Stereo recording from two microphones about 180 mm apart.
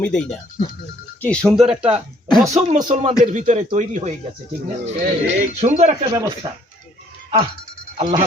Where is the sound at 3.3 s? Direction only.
45° right (ahead or behind).